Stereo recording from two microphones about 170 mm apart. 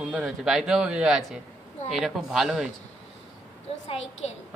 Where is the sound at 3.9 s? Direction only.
40° left (ahead or behind).